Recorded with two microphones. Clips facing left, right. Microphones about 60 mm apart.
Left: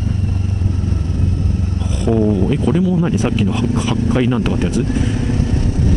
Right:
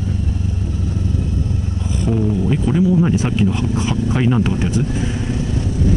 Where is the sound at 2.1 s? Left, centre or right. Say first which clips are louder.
Left 5 dB; left.